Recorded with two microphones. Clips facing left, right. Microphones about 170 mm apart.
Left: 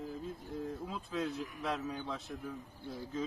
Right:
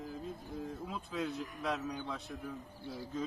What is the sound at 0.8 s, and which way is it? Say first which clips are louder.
Speech: right 1 dB; centre (ahead or behind).